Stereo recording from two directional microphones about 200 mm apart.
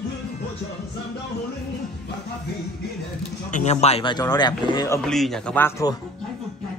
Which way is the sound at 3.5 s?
35° left (ahead or behind).